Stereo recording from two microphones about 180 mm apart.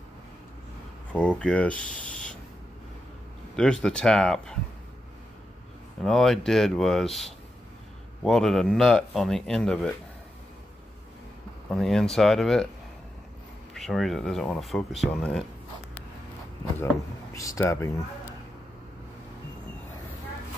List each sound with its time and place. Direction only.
1.1 s speech: 5° left (ahead or behind)
3.5 s speech: 5° left (ahead or behind)
6.0 s speech: centre (ahead or behind)
11.7 s speech: centre (ahead or behind)
13.7 s speech: centre (ahead or behind)
17.3 s speech: 15° left (ahead or behind)